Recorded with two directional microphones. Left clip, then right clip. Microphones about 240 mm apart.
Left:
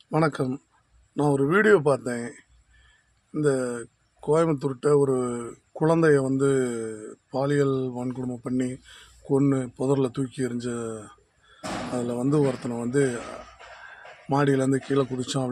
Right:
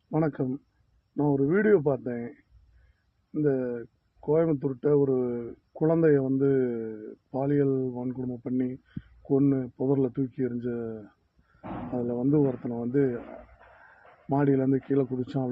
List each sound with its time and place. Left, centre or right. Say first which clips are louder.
0.1 s speech: left 4 dB; centre
3.3 s speech: left 2 dB; left
14.3 s speech: left 2 dB; centre